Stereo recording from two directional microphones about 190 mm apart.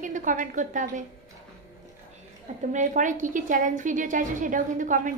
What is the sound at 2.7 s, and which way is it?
A woman's voice, 40° right (ahead or behind).